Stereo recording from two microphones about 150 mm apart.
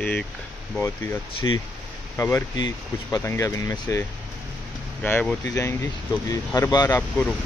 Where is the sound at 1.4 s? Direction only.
25° left (ahead or behind).